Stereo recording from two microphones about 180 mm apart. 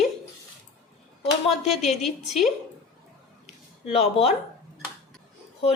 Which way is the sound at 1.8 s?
Centre (ahead or behind).